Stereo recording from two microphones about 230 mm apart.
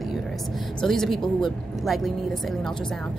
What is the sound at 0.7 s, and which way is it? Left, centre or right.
A woman's voice, centre.